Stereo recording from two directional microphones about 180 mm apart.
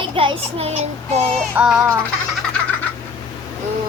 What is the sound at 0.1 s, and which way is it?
Child singing, 30° right (ahead or behind).